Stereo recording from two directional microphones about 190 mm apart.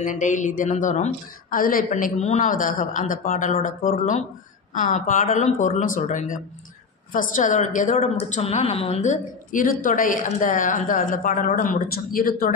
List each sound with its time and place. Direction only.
0.0 s a woman's voice: 40° left (ahead or behind)